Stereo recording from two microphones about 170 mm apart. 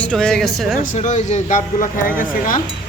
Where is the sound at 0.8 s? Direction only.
45° left (ahead or behind).